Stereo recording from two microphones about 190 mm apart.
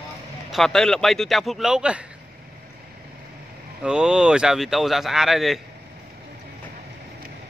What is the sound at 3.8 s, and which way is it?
Speech, 5° right (ahead or behind).